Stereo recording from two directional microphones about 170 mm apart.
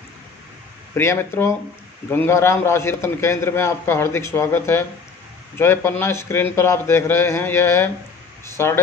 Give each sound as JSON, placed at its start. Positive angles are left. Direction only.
{"t": 0.9, "sound": "a man's voice", "side_deg": 15}